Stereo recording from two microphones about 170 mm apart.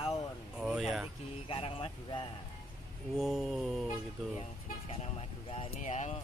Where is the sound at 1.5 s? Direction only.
35° left (ahead or behind).